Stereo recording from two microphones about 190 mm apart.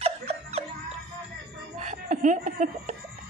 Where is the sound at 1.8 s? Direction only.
45° right (ahead or behind).